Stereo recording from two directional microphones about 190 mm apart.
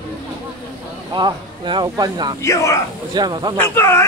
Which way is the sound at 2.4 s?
15° left (ahead or behind).